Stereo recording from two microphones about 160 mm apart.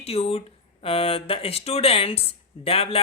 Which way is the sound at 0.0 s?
40° left (ahead or behind).